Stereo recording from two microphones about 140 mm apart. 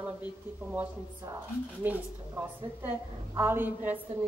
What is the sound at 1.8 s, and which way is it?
A woman's voice, 15° right (ahead or behind).